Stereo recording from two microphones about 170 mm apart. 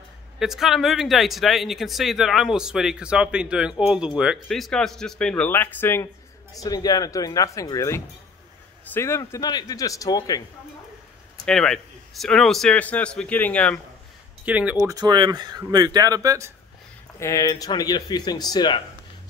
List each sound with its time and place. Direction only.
0.4 s speech: centre (ahead or behind); by 10.4 s 20° left (ahead or behind)
11.4 s speech: 5° left (ahead or behind)
14.4 s speech: 10° right (ahead or behind)
14.9 s speech: 25° right (ahead or behind)
17.2 s speech: 20° left (ahead or behind)